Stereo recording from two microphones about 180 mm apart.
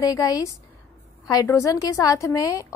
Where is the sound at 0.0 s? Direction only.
20° left (ahead or behind).